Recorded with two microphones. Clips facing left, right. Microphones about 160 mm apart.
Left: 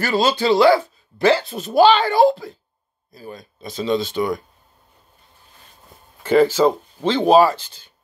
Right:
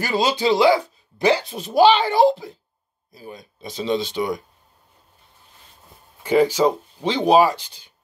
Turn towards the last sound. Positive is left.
turn(degrees=-15)  # may be behind; listen again after turning